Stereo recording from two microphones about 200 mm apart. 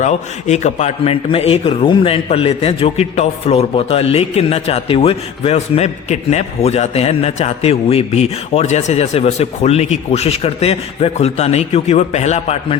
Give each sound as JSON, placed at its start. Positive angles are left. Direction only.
{"t": 0.0, "sound": "a man's voice", "side_deg": 35}